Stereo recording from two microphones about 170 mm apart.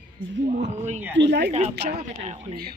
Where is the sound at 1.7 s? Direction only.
75° right (ahead or behind).